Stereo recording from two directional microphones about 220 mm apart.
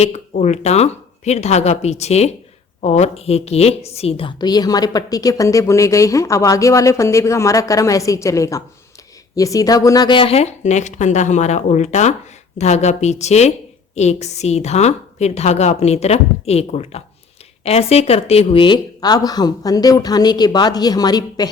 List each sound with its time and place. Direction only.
0.0 s a woman's voice: 30° left (ahead or behind)